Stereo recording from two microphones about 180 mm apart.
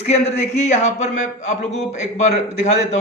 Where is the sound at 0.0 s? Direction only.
35° left (ahead or behind).